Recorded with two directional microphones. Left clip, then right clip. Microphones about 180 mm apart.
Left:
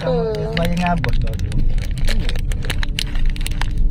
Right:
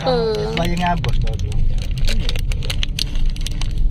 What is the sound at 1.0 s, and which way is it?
Speech, 20° left (ahead or behind).